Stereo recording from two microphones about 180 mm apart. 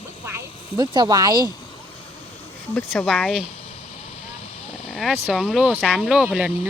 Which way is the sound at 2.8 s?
5° left (ahead or behind).